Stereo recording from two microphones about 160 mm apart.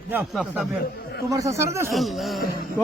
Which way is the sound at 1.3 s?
20° right (ahead or behind).